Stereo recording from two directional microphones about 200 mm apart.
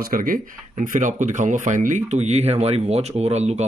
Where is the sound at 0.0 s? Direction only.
45° right (ahead or behind).